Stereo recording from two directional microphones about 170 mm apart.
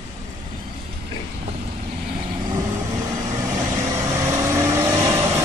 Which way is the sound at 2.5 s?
20° right (ahead or behind).